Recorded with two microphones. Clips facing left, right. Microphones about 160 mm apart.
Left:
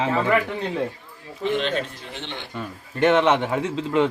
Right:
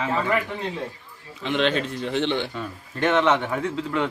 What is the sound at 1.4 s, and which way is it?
Speech, 90° right.